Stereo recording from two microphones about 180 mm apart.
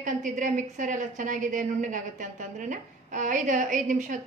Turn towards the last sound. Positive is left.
turn(degrees=-45)  # may be behind; listen again after turning